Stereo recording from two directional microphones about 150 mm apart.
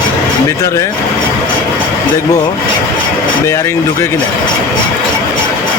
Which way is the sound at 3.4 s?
20° left (ahead or behind).